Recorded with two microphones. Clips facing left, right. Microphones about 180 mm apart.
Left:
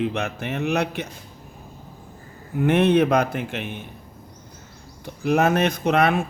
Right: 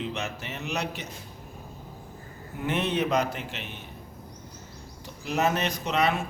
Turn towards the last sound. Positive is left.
turn(degrees=55)  # may be behind; listen again after turning